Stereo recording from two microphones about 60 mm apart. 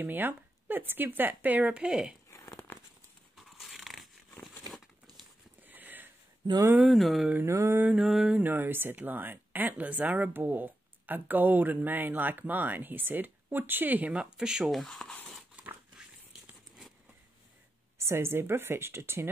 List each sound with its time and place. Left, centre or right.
0.0 s speech: right; by 2.1 s centre
2.3 s crumpling: left
3.5 s dog: centre
5.6 s a sound: right
6.9 s speech: centre
7.4 s mantra: right
8.0 s mantra: centre
8.4 s speech: right; by 14.7 s centre
14.7 s speech: centre
15.5 s biting: centre
17.9 s speech: right